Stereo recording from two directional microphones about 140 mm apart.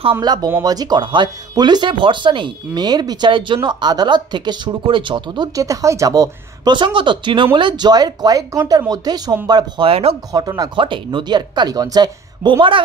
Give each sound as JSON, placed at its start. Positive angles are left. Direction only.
{"t": 0.2, "sound": "speech", "side_deg": -30}
{"t": 9.8, "sound": "speech", "side_deg": -45}
{"t": 10.3, "sound": "speech", "side_deg": -25}